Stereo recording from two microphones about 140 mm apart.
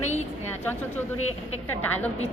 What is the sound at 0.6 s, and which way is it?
A woman's voice, 15° left (ahead or behind).